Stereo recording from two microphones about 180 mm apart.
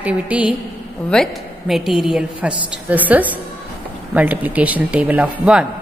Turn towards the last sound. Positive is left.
turn(degrees=-5)  # may be behind; listen again after turning